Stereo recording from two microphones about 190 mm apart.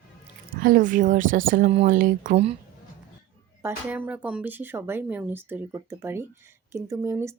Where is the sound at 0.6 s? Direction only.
45° right (ahead or behind).